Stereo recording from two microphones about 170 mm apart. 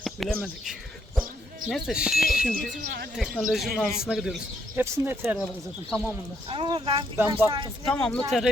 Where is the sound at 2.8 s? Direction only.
70° right (ahead or behind).